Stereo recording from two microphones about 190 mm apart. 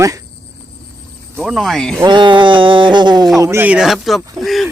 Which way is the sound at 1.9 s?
25° right (ahead or behind).